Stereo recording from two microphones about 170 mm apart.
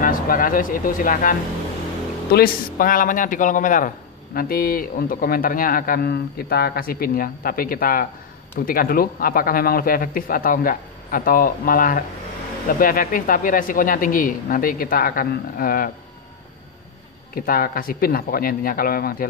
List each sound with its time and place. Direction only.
0.0 s speech: 55° left (ahead or behind)
2.3 s a man's voice: 60° left (ahead or behind)
17.3 s a man's voice: 60° left (ahead or behind)